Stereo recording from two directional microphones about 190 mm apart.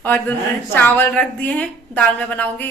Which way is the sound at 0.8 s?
10° left (ahead or behind).